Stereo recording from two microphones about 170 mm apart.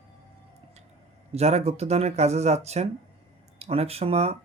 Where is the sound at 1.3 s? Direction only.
40° right (ahead or behind).